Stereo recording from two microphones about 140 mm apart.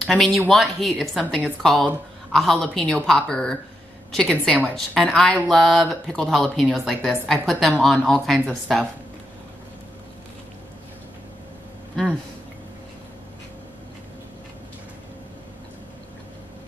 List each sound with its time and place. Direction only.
0.0 s speech: centre (ahead or behind)
11.9 s speech: 5° left (ahead or behind)